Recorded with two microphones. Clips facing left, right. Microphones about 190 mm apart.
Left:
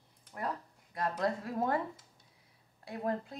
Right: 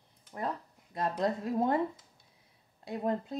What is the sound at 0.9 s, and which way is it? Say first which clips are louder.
Speech: right 2 dB; 25° right (ahead or behind).